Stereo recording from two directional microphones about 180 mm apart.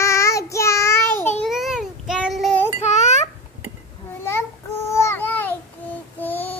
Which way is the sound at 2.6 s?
35° left (ahead or behind).